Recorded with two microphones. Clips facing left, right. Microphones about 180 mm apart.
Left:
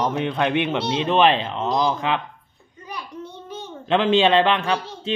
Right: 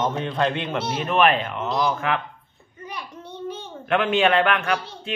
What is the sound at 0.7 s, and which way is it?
Speech, 25° left (ahead or behind).